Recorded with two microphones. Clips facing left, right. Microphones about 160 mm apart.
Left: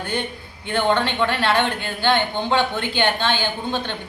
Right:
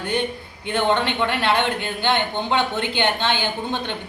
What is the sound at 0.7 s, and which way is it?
A woman's voice, 20° right (ahead or behind).